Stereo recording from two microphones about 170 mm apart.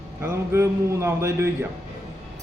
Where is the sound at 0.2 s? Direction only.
15° right (ahead or behind).